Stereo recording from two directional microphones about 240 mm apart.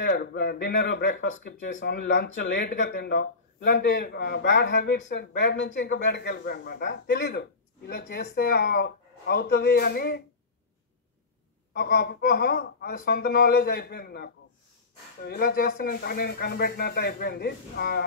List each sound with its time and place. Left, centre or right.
0.0 s speech: left
11.7 s speech: left